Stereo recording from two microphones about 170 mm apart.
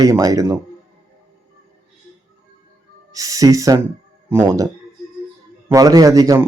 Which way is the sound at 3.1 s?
20° right (ahead or behind).